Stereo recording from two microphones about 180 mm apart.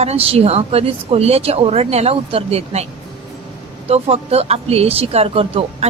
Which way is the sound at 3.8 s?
35° right (ahead or behind).